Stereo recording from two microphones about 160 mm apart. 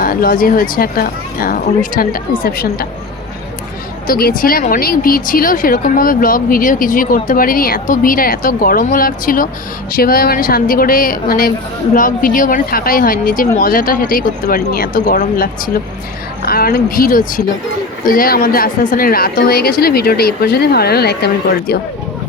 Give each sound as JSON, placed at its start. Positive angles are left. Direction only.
{"t": 0.0, "sound": "speech", "side_deg": 65}
{"t": 4.0, "sound": "a woman's voice", "side_deg": 65}